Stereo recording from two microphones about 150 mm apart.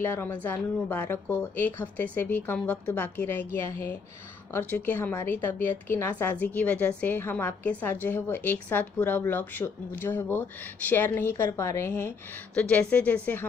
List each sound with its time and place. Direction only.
0.0 s speech: 10° left (ahead or behind)